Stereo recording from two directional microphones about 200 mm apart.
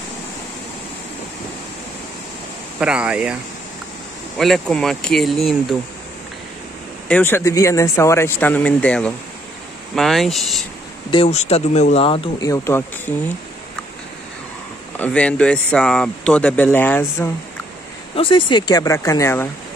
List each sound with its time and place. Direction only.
2.8 s speech: 5° right (ahead or behind)
4.4 s speech: centre (ahead or behind)
7.1 s speech: 10° left (ahead or behind)
11.1 s speech: 30° left (ahead or behind); by 13.1 s 10° left (ahead or behind)
15.0 s speech: 5° left (ahead or behind)
18.1 s speech: 25° left (ahead or behind)